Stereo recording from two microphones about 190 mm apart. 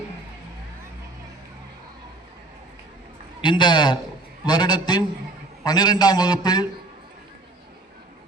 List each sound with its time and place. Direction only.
3.4 s a man's voice: 25° left (ahead or behind)